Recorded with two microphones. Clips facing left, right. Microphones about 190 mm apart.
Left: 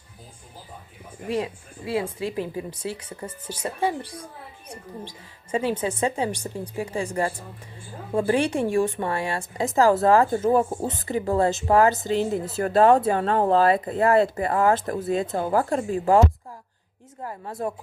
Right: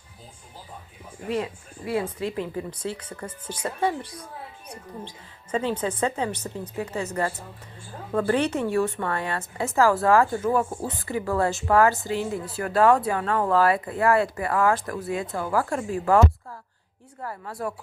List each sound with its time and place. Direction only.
1.3 s a woman's voice: 20° left (ahead or behind)
2.0 s a woman's voice: 10° left (ahead or behind); by 15.9 s 35° left (ahead or behind)
17.2 s a woman's voice: 20° left (ahead or behind)